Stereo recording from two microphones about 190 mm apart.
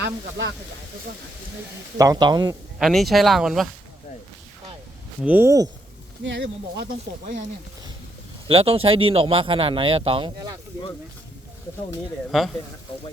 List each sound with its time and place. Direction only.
0.0 s speech: 70° right (ahead or behind)
2.0 s speech: 20° right (ahead or behind)
2.7 s speech: centre (ahead or behind)
5.2 s speech: 10° right (ahead or behind)
6.2 s speech: 70° right (ahead or behind); by 7.4 s 50° right (ahead or behind)
8.4 s speech: 30° right (ahead or behind)
12.3 s speech: centre (ahead or behind)